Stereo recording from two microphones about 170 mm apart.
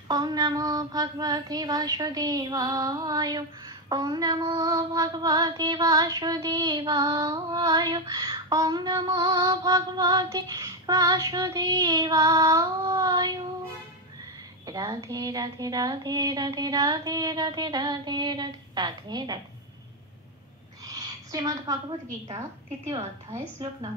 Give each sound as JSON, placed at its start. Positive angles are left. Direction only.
{"t": 0.1, "sound": "child singing", "side_deg": -25}
{"t": 14.7, "sound": "child singing", "side_deg": -20}
{"t": 20.8, "sound": "a sound", "side_deg": -20}
{"t": 22.8, "sound": "child singing", "side_deg": -20}